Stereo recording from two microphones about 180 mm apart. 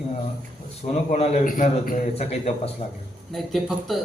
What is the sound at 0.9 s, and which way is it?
A man's voice, 35° left (ahead or behind).